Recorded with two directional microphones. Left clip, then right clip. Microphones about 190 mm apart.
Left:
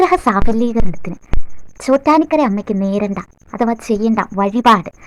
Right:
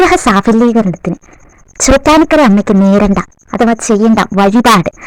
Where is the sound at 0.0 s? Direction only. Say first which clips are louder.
Right 5 dB; 40° right (ahead or behind).